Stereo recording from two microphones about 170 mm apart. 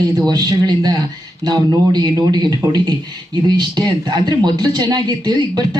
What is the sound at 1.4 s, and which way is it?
A man's voice, 25° right (ahead or behind).